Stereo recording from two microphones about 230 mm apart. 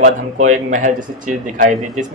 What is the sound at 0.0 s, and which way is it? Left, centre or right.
A man's voice, right.